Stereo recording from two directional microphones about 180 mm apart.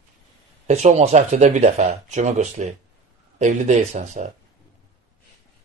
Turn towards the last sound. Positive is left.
turn(degrees=-40)  # may be behind; listen again after turning